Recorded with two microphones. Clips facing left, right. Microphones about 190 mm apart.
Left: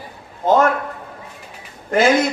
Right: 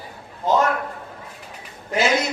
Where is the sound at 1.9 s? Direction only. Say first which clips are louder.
Left 6 dB; 50° left (ahead or behind).